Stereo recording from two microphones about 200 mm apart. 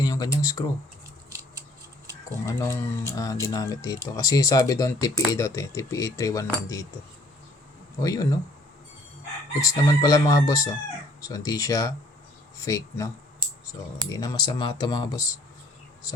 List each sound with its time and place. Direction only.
0.0 s speech: 15° left (ahead or behind)
2.5 s speech: 15° left (ahead or behind)
8.0 s speech: 15° left (ahead or behind)
9.6 s speech: 15° left (ahead or behind)
14.1 s speech: 20° left (ahead or behind)